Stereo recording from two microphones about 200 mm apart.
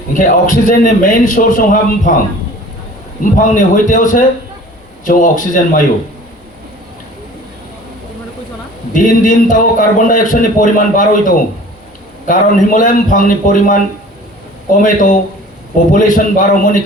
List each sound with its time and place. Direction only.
0.1 s a man's voice: 40° left (ahead or behind)
3.3 s a man's voice: 40° left (ahead or behind)
8.9 s a man's voice: 40° left (ahead or behind)